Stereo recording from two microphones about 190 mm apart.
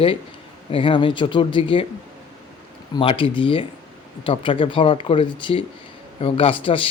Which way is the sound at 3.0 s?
30° left (ahead or behind).